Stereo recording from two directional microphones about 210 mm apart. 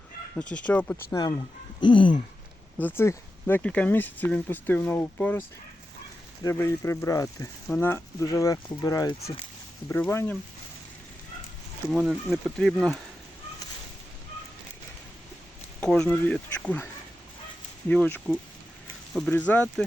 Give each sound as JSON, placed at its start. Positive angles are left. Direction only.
{"t": 0.3, "sound": "speech", "side_deg": 5}
{"t": 1.8, "sound": "a sound", "side_deg": 25}
{"t": 2.7, "sound": "speech", "side_deg": 10}
{"t": 11.9, "sound": "speech", "side_deg": 0}
{"t": 15.8, "sound": "speech", "side_deg": 5}